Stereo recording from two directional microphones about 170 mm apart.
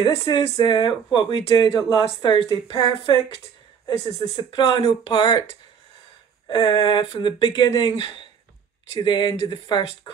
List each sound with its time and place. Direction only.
0.0 s speech: 20° left (ahead or behind)
4.4 s speech: 30° left (ahead or behind)
6.5 s speech: 25° left (ahead or behind)